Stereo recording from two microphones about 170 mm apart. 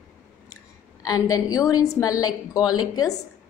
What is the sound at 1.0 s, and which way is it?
A woman's voice, 20° left (ahead or behind).